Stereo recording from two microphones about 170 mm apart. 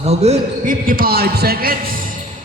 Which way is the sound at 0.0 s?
40° right (ahead or behind).